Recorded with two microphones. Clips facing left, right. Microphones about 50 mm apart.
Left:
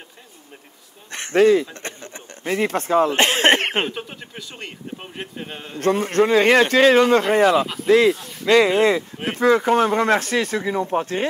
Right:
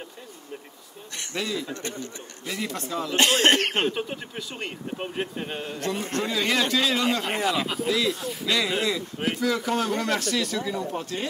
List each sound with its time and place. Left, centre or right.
1.1 s speech: left
3.9 s speech: centre
5.8 s speech: left
8.1 s speech: centre
8.5 s speech: left